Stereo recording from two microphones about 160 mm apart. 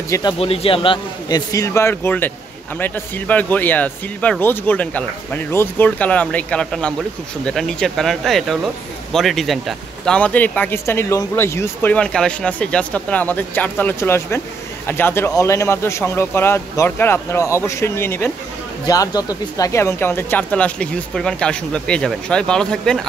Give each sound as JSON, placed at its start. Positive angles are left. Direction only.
{"t": 0.1, "sound": "a man's voice", "side_deg": 30}
{"t": 1.5, "sound": "speech", "side_deg": 20}